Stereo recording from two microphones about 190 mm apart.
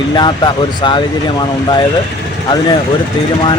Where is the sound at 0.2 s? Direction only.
25° left (ahead or behind).